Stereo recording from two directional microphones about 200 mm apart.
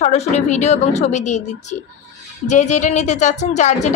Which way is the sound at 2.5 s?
35° left (ahead or behind).